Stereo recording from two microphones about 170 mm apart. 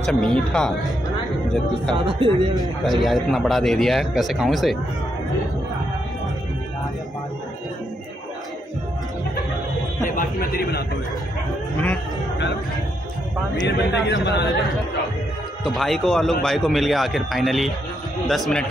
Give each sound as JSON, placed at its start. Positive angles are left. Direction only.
{"t": 0.0, "sound": "speech", "side_deg": 5}
{"t": 2.0, "sound": "speech", "side_deg": -30}
{"t": 2.8, "sound": "speech", "side_deg": 0}
{"t": 10.0, "sound": "speech", "side_deg": 55}
{"t": 13.7, "sound": "a man's voice", "side_deg": 90}
{"t": 15.6, "sound": "speech", "side_deg": 0}